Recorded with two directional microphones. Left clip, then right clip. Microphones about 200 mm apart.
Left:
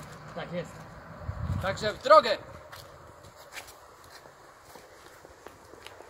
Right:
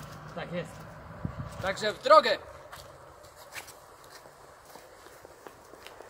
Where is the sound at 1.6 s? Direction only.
10° right (ahead or behind).